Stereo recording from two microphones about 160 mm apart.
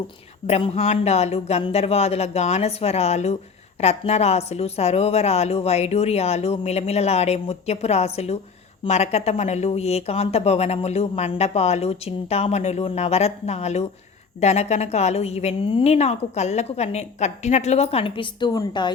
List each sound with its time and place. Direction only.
0.4 s speech: 40° left (ahead or behind)